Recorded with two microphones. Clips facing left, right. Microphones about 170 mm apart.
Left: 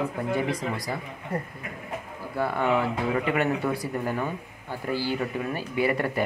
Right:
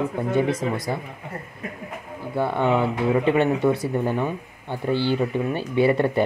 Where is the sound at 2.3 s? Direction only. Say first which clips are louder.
Right 3 dB; 25° right (ahead or behind).